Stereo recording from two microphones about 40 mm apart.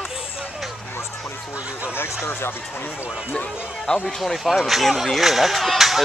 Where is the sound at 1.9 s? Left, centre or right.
Left.